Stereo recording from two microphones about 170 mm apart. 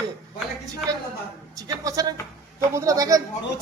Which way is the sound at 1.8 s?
20° right (ahead or behind).